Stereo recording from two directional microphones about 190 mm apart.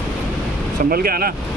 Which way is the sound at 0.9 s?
50° right (ahead or behind).